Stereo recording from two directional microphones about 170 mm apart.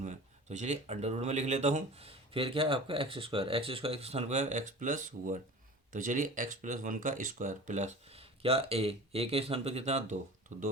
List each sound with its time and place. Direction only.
0.0 s speech: 45° right (ahead or behind)